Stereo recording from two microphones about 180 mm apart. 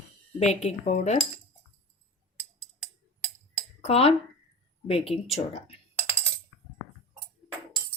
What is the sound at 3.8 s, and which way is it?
Speech, 35° left (ahead or behind).